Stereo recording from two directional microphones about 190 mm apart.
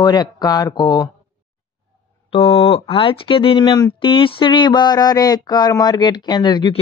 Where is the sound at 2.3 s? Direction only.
30° left (ahead or behind).